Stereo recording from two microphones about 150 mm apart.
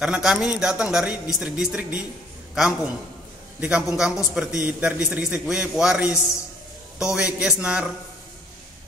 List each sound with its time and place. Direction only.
0.0 s a man's voice: 5° right (ahead or behind)
3.9 s a man's voice: 5° right (ahead or behind)